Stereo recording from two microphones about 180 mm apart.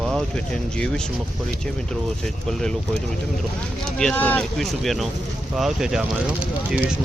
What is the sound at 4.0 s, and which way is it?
Speech, 5° left (ahead or behind).